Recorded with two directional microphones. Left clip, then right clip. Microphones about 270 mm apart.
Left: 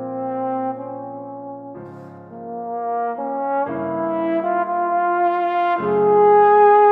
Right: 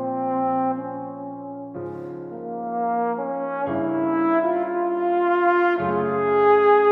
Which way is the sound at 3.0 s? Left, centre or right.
Left.